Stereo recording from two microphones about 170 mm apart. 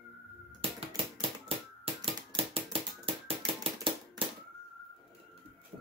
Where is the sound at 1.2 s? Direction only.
35° right (ahead or behind).